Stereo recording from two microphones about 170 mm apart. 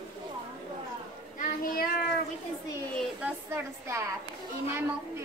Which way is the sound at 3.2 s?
15° right (ahead or behind).